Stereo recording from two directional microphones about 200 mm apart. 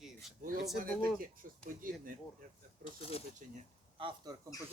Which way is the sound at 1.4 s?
45° right (ahead or behind).